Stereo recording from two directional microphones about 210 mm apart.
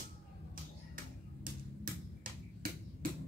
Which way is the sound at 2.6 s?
45° right (ahead or behind).